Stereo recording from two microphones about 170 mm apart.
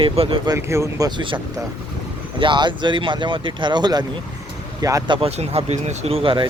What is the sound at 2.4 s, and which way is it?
Speech, 30° right (ahead or behind).